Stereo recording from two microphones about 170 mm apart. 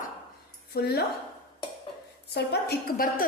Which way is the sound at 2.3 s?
70° left (ahead or behind).